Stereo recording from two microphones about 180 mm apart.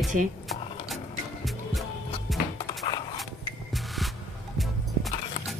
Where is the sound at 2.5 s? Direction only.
25° left (ahead or behind).